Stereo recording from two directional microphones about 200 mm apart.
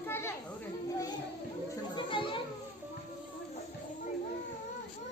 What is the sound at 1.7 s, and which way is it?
Children playing, 25° left (ahead or behind).